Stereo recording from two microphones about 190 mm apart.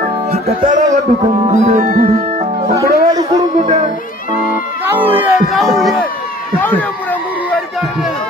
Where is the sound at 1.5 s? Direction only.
40° right (ahead or behind).